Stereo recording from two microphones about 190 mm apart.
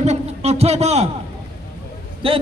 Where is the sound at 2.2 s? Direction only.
30° right (ahead or behind).